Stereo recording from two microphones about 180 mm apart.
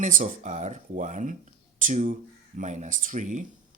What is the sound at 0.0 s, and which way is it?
Speech, 45° right (ahead or behind).